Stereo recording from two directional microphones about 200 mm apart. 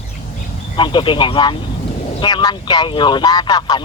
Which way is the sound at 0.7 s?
25° left (ahead or behind).